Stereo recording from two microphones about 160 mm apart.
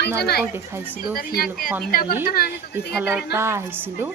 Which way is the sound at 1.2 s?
70° left (ahead or behind).